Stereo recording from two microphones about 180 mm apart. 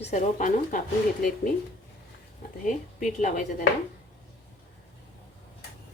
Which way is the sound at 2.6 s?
45° left (ahead or behind).